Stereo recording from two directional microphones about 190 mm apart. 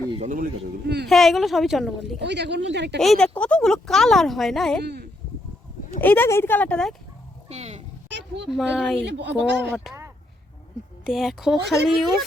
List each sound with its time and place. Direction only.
0.1 s speech: 40° right (ahead or behind); by 1.0 s 55° right (ahead or behind)
1.0 s speech: centre (ahead or behind)
2.1 s speech: 65° right (ahead or behind)
3.0 s speech: centre (ahead or behind)
4.8 s speech: 60° right (ahead or behind)
6.0 s speech: 10° left (ahead or behind)
7.4 s a sound: 35° right (ahead or behind)
8.4 s speech: centre (ahead or behind)
9.0 s speech: 65° right (ahead or behind)
11.0 s speech: centre (ahead or behind)